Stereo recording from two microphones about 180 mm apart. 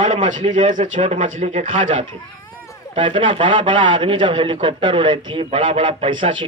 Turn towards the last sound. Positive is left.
turn(degrees=-25)  # may be behind; listen again after turning